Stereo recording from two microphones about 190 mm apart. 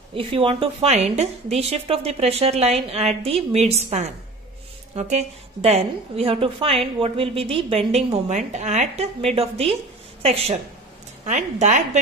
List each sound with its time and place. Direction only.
0.1 s a woman's voice: 30° right (ahead or behind)